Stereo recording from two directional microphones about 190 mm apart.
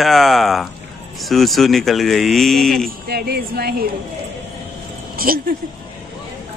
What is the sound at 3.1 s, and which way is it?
Speech, 55° right (ahead or behind).